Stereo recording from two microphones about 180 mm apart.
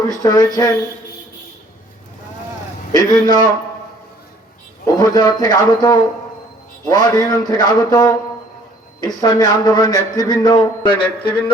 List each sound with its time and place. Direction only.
0.1 s speech: 20° left (ahead or behind)
2.9 s speech: 20° left (ahead or behind)
4.9 s speech: 20° left (ahead or behind)
9.2 s speech: 20° left (ahead or behind)